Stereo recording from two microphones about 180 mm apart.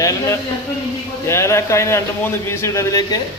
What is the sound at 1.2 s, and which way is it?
A man's voice, 15° left (ahead or behind).